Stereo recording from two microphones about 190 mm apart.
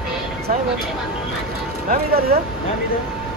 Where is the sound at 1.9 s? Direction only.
55° right (ahead or behind).